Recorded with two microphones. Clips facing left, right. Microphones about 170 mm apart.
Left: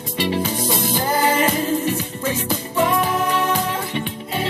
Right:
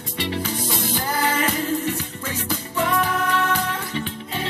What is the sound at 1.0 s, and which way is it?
Music, 25° left (ahead or behind).